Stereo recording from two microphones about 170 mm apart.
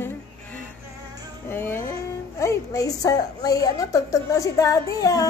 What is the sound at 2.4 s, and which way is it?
A woman's voice, 20° left (ahead or behind).